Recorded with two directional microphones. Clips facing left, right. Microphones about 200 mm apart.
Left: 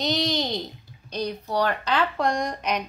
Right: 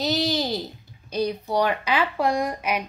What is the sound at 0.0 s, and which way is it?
Speech, centre (ahead or behind).